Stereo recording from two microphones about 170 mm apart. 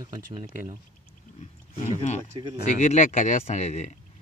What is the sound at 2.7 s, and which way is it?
Speech, 45° left (ahead or behind).